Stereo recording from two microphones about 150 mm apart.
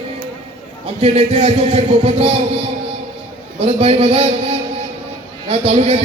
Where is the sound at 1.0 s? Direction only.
40° right (ahead or behind).